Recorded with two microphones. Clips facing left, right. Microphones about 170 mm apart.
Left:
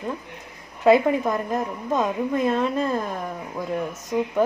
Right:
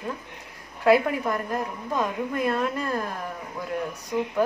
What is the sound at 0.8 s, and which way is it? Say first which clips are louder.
A woman's voice: left 3 dB; 20° left (ahead or behind).